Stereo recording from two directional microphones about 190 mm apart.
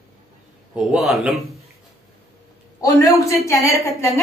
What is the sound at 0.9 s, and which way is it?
Speech, centre (ahead or behind).